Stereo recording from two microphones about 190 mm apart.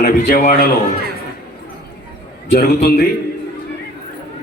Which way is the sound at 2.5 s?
55° left (ahead or behind).